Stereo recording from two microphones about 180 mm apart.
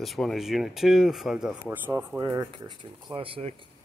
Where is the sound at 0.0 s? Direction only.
Centre (ahead or behind); by 3.6 s 30° right (ahead or behind).